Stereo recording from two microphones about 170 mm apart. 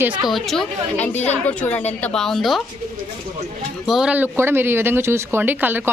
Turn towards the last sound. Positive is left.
turn(degrees=-10)  # may be behind; listen again after turning